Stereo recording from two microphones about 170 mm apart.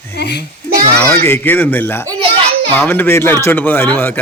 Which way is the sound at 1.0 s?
10° left (ahead or behind).